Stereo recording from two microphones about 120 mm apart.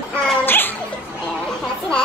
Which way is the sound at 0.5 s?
15° left (ahead or behind).